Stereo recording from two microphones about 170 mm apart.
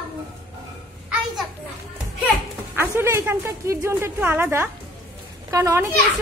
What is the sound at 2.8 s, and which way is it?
A woman's voice, 15° right (ahead or behind).